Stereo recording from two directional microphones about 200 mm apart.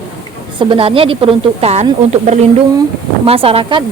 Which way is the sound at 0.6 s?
25° right (ahead or behind).